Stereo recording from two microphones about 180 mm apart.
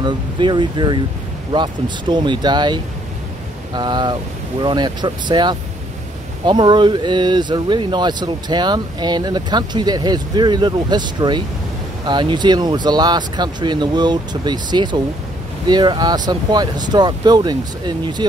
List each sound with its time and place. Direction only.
0.0 s speech: 25° right (ahead or behind)